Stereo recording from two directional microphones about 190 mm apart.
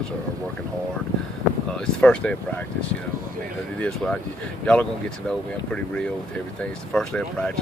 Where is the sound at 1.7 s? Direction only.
5° left (ahead or behind).